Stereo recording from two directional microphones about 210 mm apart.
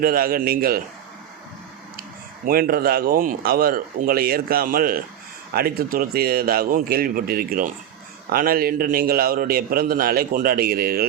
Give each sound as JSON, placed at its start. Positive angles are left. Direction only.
{"t": 0.0, "sound": "a man's voice", "side_deg": -45}
{"t": 2.4, "sound": "a man's voice", "side_deg": -45}